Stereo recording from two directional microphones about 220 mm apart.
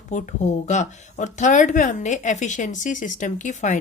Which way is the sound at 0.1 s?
35° left (ahead or behind).